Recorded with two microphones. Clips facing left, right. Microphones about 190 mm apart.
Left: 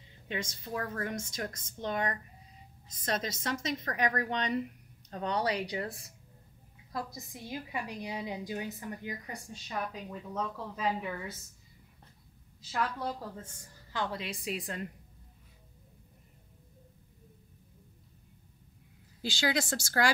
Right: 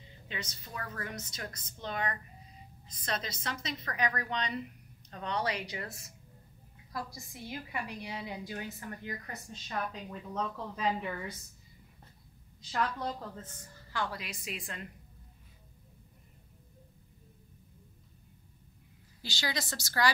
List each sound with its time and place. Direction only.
0.3 s a woman's voice: 50° left (ahead or behind)
5.1 s speech: 35° left (ahead or behind)
6.9 s a woman's voice: 20° left (ahead or behind); by 11.3 s 5° left (ahead or behind)
12.6 s a woman's voice: 5° left (ahead or behind)
14.0 s speech: 25° left (ahead or behind)
19.6 s a woman's voice: 50° left (ahead or behind)